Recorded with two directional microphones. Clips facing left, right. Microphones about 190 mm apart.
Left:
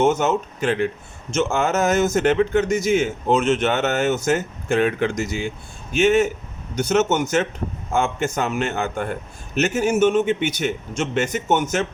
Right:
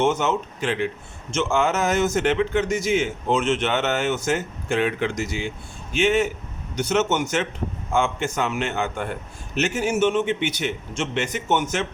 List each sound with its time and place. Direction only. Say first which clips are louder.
0.0 s a man's voice: left 3 dB; 40° left (ahead or behind)